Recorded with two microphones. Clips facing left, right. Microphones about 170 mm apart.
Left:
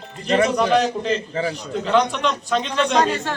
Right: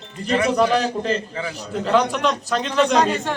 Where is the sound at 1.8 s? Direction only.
5° right (ahead or behind).